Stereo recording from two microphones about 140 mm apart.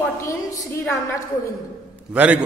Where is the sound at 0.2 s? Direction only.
25° left (ahead or behind).